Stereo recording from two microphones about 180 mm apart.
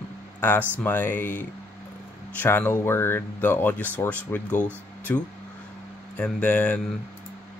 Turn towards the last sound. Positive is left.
turn(degrees=10)  # may be behind; listen again after turning